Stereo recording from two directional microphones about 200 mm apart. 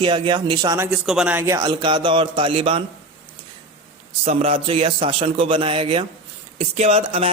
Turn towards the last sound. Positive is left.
turn(degrees=-30)  # may be behind; listen again after turning